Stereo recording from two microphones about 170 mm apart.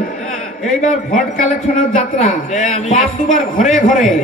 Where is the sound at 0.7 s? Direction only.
50° left (ahead or behind).